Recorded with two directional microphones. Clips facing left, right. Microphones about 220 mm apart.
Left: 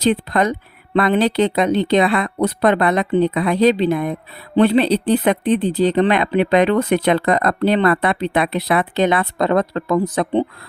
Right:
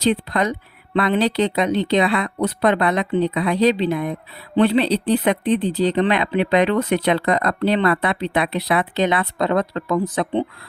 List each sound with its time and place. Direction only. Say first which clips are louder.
0.0 s speech: left 2 dB; 50° left (ahead or behind)